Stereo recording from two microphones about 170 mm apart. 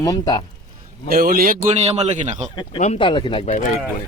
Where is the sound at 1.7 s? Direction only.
40° right (ahead or behind).